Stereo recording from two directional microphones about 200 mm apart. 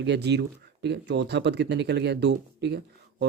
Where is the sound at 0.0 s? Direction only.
60° right (ahead or behind).